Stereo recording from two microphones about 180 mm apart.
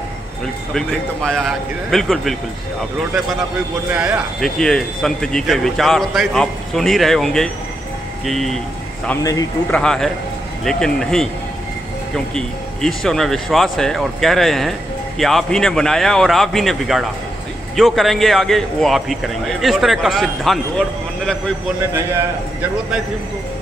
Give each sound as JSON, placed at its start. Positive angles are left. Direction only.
{"t": 0.7, "sound": "speech", "side_deg": 5}
{"t": 3.9, "sound": "speech", "side_deg": -5}
{"t": 9.2, "sound": "speech", "side_deg": 20}
{"t": 9.7, "sound": "speech", "side_deg": 5}
{"t": 12.4, "sound": "speech", "side_deg": 5}